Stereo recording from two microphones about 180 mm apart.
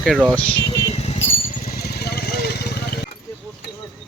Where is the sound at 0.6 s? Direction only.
20° left (ahead or behind).